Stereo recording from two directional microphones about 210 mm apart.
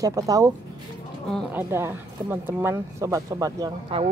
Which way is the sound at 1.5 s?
10° right (ahead or behind).